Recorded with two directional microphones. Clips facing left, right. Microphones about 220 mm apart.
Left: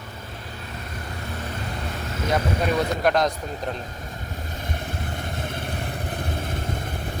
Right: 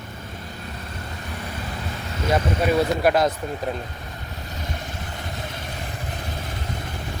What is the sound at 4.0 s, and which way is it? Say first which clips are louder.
Vehicle: left 1 dB; 50° left (ahead or behind).